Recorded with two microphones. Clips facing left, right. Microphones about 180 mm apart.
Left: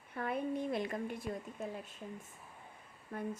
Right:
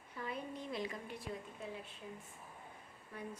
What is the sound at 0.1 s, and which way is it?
A woman's voice, 55° left (ahead or behind).